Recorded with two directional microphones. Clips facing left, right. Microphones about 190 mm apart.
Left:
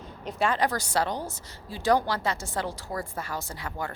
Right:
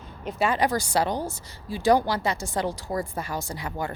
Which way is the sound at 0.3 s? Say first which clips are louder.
Right 2 dB; 5° right (ahead or behind).